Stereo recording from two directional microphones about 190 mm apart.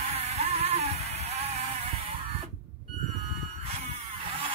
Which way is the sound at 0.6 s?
35° right (ahead or behind).